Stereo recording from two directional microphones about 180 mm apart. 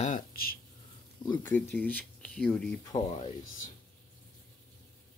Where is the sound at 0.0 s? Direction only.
50° left (ahead or behind).